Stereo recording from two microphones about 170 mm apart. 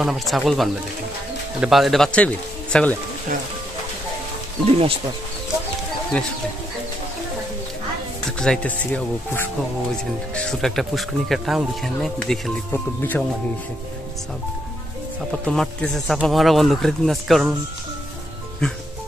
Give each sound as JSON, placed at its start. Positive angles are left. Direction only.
{"t": 0.0, "sound": "speech", "side_deg": 0}
{"t": 4.6, "sound": "speech", "side_deg": -35}
{"t": 8.3, "sound": "speech", "side_deg": 5}
{"t": 15.4, "sound": "speech", "side_deg": 5}
{"t": 18.6, "sound": "speech", "side_deg": 5}